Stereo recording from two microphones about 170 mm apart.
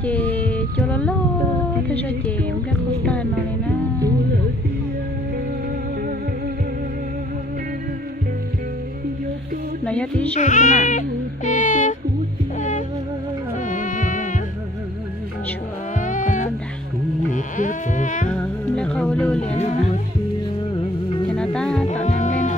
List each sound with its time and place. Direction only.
0.0 s music: 10° left (ahead or behind)
1.9 s speech: 10° left (ahead or behind)
9.8 s music: 10° left (ahead or behind)
10.3 s baby cry: 45° left (ahead or behind)
12.5 s music: 45° left (ahead or behind)
16.0 s music: 50° left (ahead or behind)
17.3 s sheep: 50° left (ahead or behind)
18.3 s music: 5° left (ahead or behind)
20.7 s music: 30° left (ahead or behind)
21.4 s music: 5° left (ahead or behind)
22.0 s music: 45° left (ahead or behind)